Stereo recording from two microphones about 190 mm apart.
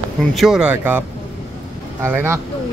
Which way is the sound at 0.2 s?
Centre (ahead or behind).